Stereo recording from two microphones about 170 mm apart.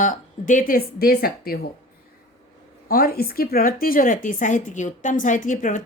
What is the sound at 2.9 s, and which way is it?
A woman's voice, 65° left (ahead or behind).